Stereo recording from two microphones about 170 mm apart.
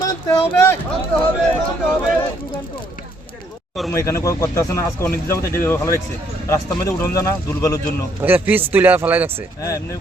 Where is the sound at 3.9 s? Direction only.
15° left (ahead or behind).